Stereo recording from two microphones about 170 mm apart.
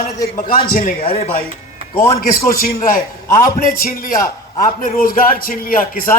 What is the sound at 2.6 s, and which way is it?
A man's voice, 55° left (ahead or behind).